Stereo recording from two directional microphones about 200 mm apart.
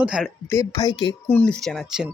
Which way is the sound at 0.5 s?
20° left (ahead or behind).